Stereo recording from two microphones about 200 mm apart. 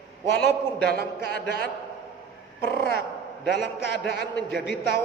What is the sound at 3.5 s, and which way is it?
A man's voice, 60° left (ahead or behind).